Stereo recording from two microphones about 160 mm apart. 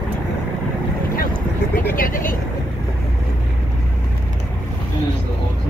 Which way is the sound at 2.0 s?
60° left (ahead or behind).